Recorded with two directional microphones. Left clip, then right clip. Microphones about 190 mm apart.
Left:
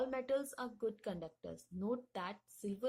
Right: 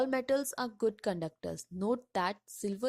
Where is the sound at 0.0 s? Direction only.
40° right (ahead or behind).